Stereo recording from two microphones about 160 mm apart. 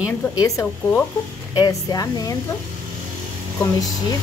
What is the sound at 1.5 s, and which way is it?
Speech, 25° left (ahead or behind).